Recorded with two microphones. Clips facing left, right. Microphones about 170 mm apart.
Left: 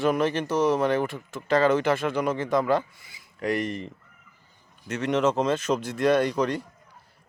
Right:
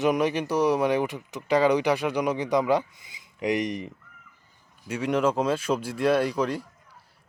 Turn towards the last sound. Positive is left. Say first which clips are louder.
# left 1 dB
turn(degrees=-5)  # may be behind; listen again after turning